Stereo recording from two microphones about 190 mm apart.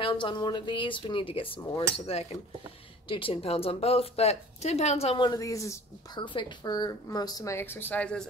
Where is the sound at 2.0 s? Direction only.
30° left (ahead or behind).